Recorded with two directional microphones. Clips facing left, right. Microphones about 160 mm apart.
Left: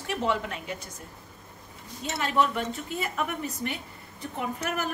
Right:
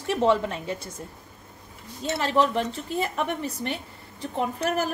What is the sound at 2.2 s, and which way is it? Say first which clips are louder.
A woman's voice: right 3 dB; 35° right (ahead or behind).